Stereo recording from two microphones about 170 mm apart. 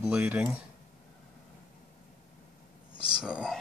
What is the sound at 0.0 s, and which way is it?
Speech, 5° right (ahead or behind).